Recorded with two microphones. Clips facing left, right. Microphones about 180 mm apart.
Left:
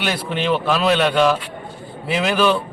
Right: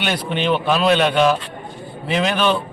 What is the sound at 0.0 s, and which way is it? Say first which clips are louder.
A man's voice: right 1 dB; centre (ahead or behind).